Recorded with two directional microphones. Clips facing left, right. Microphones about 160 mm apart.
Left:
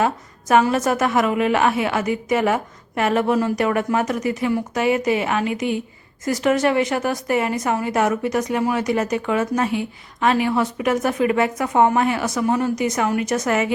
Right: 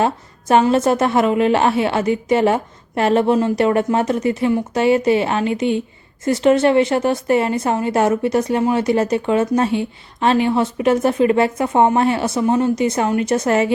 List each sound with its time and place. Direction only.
0.0 s a woman's voice: 30° right (ahead or behind)